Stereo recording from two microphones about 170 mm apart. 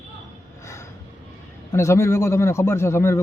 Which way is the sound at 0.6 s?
15° left (ahead or behind).